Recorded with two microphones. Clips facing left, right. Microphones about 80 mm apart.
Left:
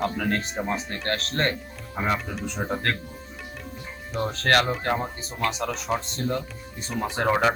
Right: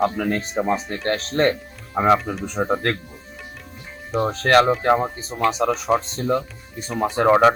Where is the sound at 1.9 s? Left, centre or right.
Right.